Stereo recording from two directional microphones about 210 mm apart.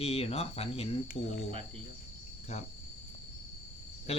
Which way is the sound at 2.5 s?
30° left (ahead or behind).